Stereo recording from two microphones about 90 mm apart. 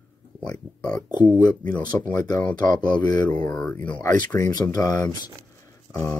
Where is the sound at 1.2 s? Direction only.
15° left (ahead or behind).